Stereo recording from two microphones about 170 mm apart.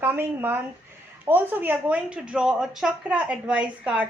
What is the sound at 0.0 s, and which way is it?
A woman's voice, 10° right (ahead or behind).